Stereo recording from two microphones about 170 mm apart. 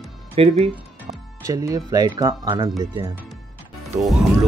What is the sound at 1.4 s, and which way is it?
Speech, 20° right (ahead or behind).